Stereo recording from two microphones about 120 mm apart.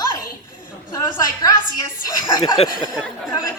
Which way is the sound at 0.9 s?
30° left (ahead or behind).